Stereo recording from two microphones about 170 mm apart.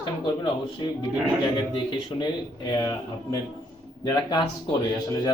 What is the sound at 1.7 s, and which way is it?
A man's voice, 25° left (ahead or behind).